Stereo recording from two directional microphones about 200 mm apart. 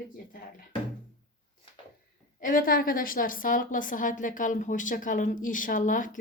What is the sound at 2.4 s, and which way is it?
A woman's voice, 45° left (ahead or behind).